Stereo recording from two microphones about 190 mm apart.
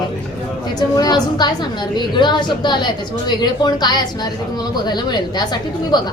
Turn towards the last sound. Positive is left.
turn(degrees=20)  # may be behind; listen again after turning